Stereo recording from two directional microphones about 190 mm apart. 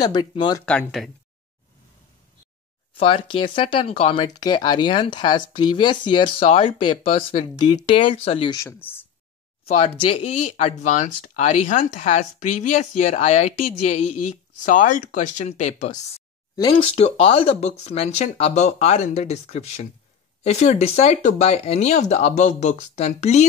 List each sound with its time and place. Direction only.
0.0 s speech: 20° left (ahead or behind)
0.7 s speech: 5° left (ahead or behind)
3.0 s speech: 30° left (ahead or behind)
8.5 s speech: 10° left (ahead or behind)
9.7 s speech: 30° left (ahead or behind)
16.5 s speech: 25° left (ahead or behind)